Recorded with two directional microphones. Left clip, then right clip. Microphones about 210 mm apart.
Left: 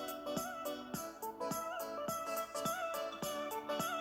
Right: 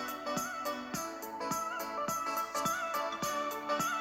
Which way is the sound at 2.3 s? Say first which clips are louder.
Right 5 dB; 20° right (ahead or behind).